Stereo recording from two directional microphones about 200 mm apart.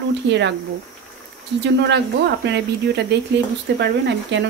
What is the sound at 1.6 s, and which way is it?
Speech, 60° right (ahead or behind).